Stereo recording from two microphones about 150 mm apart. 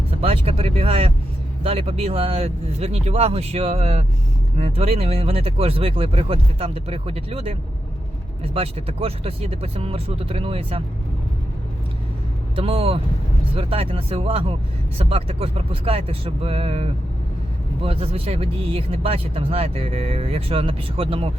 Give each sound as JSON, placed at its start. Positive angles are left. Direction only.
{"t": 0.2, "sound": "speech", "side_deg": -40}
{"t": 8.5, "sound": "speech", "side_deg": -40}
{"t": 12.5, "sound": "speech", "side_deg": -40}